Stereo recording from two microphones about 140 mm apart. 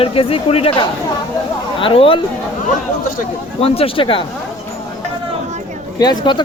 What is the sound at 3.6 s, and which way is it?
Speech, 45° left (ahead or behind).